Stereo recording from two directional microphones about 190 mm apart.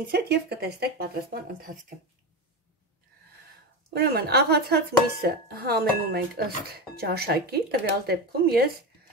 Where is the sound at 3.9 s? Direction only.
55° right (ahead or behind).